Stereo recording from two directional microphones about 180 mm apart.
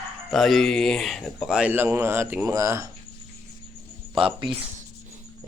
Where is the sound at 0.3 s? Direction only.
Centre (ahead or behind); by 2.9 s 15° right (ahead or behind).